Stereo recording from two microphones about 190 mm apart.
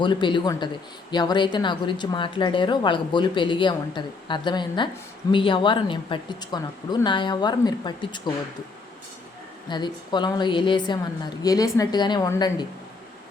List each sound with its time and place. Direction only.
0.0 s a woman's voice: 25° left (ahead or behind)
9.6 s a woman's voice: 25° left (ahead or behind)